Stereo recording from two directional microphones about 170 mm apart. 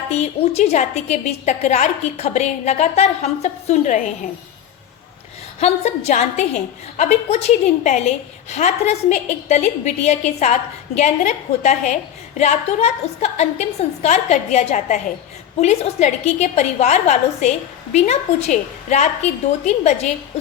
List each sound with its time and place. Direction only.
0.1 s a woman's voice: 40° left (ahead or behind)
5.5 s a woman's voice: 40° left (ahead or behind)